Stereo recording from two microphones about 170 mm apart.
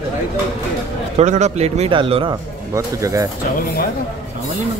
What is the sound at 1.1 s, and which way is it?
Speech, 45° right (ahead or behind).